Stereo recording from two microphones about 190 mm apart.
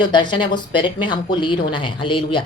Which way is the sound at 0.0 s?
25° left (ahead or behind).